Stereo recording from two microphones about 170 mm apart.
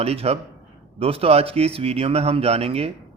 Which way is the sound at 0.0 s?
35° right (ahead or behind).